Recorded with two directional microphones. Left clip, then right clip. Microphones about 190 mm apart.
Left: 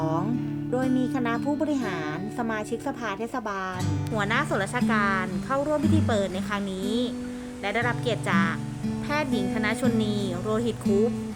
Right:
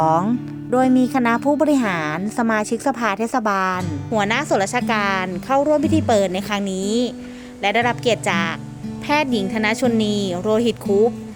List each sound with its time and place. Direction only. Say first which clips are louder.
0.0 s music: right 11 dB; 40° right (ahead or behind)
0.7 s speech: right 10 dB; 40° right (ahead or behind)
6.7 s a woman's voice: right 8 dB; 90° right
7.6 s speech: right 9 dB; 35° right (ahead or behind)